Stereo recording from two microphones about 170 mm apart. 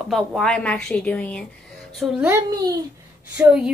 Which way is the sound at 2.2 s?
15° right (ahead or behind).